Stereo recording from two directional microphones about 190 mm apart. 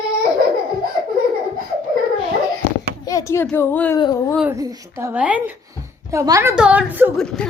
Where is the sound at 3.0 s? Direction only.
15° left (ahead or behind).